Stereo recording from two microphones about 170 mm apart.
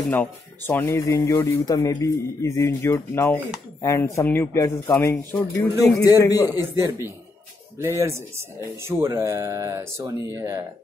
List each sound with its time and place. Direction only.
0.1 s speech: 10° left (ahead or behind)
7.8 s speech: 15° right (ahead or behind)